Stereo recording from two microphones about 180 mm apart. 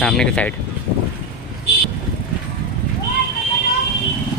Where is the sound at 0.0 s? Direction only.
5° left (ahead or behind).